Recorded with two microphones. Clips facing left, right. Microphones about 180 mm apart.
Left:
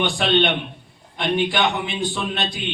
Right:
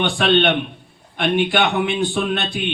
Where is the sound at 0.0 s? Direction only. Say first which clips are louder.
Right 3 dB; 60° right (ahead or behind).